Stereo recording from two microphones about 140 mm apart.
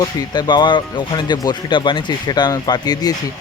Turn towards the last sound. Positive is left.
turn(degrees=30)  # may be behind; listen again after turning